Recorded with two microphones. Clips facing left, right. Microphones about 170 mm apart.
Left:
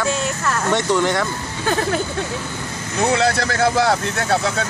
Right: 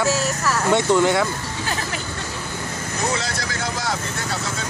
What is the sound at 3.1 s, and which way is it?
Speech, 60° left (ahead or behind).